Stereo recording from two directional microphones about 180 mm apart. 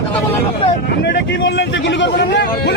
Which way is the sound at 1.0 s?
70° left (ahead or behind).